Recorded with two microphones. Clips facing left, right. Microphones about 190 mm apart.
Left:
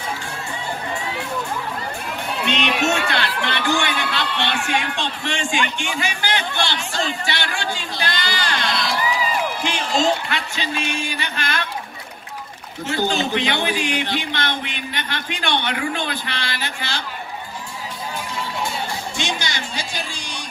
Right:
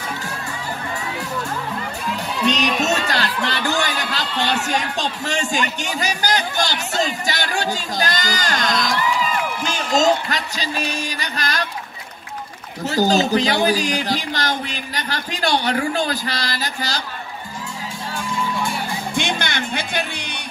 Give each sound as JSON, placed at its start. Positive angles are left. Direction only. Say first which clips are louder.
{"t": 2.4, "sound": "speech", "louder": "right 2 dB", "side_deg": -40}
{"t": 12.8, "sound": "speech", "louder": "right 4 dB", "side_deg": -40}
{"t": 19.1, "sound": "speech", "louder": "right 6 dB", "side_deg": -55}